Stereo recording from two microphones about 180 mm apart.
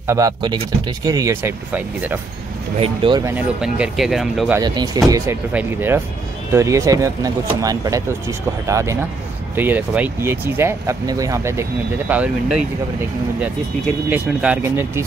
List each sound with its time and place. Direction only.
0.0 s speech: 20° right (ahead or behind)
2.8 s speech: 25° right (ahead or behind)
3.3 s speech: 10° right (ahead or behind)
4.6 s speech: 20° right (ahead or behind); by 12.5 s 5° right (ahead or behind)
14.1 s speech: 10° right (ahead or behind)